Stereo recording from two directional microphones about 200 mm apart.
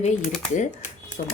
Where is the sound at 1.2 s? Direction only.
40° left (ahead or behind).